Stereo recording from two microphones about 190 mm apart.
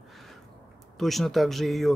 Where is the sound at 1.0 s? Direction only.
Centre (ahead or behind).